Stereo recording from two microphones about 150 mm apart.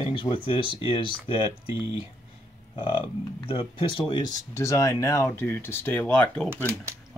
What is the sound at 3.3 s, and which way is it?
Speech, 35° left (ahead or behind).